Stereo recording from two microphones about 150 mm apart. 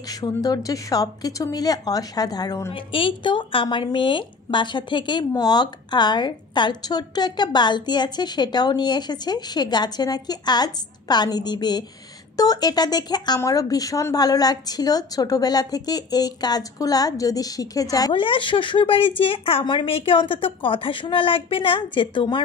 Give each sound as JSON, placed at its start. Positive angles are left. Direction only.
{"t": 0.1, "sound": "speech", "side_deg": 25}
{"t": 2.7, "sound": "speech", "side_deg": 35}